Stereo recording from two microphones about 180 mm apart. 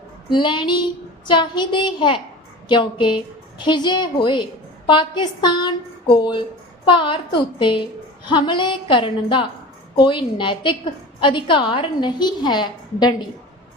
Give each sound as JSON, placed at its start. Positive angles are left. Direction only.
{"t": 0.3, "sound": "a woman's voice", "side_deg": 25}